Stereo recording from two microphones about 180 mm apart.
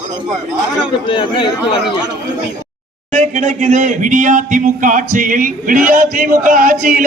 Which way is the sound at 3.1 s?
40° right (ahead or behind).